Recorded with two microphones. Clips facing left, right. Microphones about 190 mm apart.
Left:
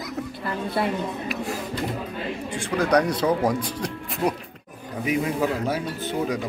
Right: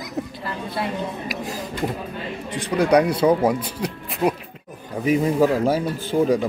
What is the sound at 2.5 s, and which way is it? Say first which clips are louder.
Speech: right 4 dB; 15° right (ahead or behind).